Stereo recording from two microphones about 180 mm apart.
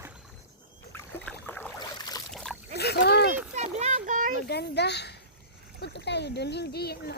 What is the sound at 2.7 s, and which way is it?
Splash, 65° left (ahead or behind).